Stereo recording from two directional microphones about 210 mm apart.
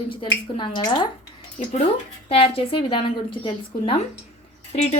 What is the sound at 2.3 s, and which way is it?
Speech, 25° left (ahead or behind).